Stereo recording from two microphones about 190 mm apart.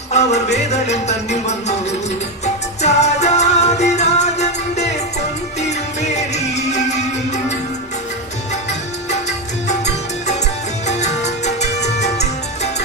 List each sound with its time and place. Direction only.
0.1 s music: 35° left (ahead or behind)
9.6 s music: 35° left (ahead or behind)